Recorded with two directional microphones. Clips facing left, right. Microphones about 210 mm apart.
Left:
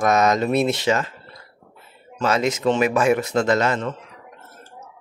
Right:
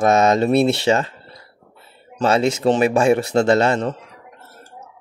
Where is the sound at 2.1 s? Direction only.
30° right (ahead or behind).